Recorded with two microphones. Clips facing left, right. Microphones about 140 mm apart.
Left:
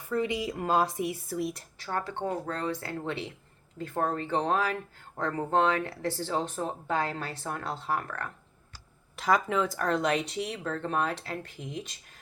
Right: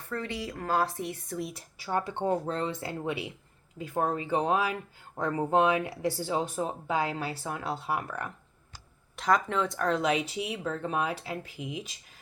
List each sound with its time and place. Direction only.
0.0 s a woman's voice: 15° left (ahead or behind)
1.9 s speech: 20° right (ahead or behind)
3.0 s speech: 10° right (ahead or behind)
9.1 s speech: centre (ahead or behind)